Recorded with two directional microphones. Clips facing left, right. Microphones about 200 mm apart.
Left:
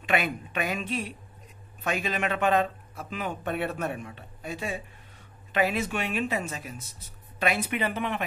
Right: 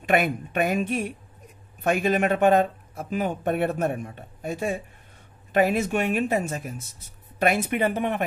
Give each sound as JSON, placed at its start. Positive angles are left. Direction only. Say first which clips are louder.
{"t": 0.0, "sound": "speech", "louder": "right 5 dB", "side_deg": -50}